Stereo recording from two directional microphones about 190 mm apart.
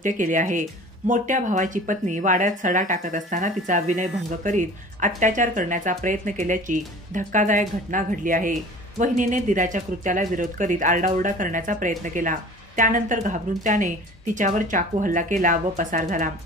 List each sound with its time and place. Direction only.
0.0 s speech: 40° right (ahead or behind)